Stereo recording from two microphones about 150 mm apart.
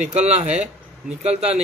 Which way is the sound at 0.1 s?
50° right (ahead or behind).